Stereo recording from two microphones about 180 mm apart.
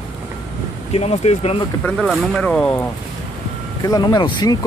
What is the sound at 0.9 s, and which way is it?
Speech, 35° left (ahead or behind).